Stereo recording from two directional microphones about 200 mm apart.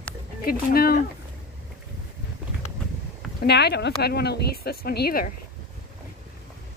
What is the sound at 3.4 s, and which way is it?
Speech, 55° left (ahead or behind).